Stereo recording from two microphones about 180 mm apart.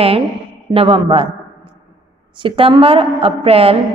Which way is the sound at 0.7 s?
30° right (ahead or behind).